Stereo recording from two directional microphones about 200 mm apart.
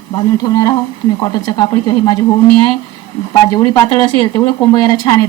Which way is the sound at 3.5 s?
25° left (ahead or behind).